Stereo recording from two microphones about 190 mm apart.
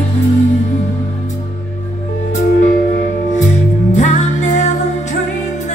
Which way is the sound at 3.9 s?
40° left (ahead or behind).